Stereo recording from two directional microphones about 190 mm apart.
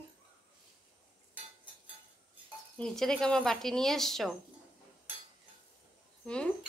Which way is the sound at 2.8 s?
Centre (ahead or behind).